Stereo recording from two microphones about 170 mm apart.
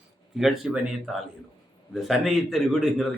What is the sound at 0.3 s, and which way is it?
A man's voice, centre (ahead or behind).